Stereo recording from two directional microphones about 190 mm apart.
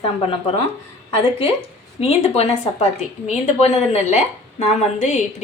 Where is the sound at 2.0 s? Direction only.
30° left (ahead or behind).